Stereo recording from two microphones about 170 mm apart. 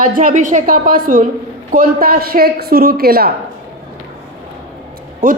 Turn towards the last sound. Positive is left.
turn(degrees=-55)  # may be behind; listen again after turning